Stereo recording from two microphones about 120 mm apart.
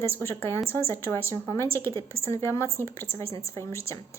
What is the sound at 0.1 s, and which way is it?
Speech, 20° left (ahead or behind).